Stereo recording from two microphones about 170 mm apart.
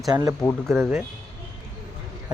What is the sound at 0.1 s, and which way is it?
Speech, 20° right (ahead or behind).